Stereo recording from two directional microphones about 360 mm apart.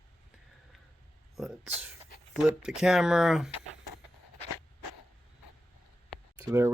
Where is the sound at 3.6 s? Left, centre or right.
Left.